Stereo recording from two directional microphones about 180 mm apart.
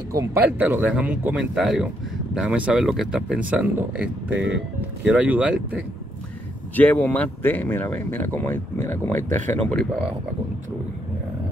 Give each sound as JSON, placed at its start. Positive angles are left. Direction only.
{"t": 0.1, "sound": "speech", "side_deg": -20}
{"t": 6.7, "sound": "speech", "side_deg": 10}